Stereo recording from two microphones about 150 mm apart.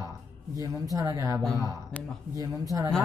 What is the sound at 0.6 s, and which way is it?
Speech, 25° right (ahead or behind).